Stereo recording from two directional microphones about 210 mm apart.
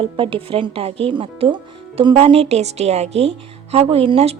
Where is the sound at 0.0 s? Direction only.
25° right (ahead or behind).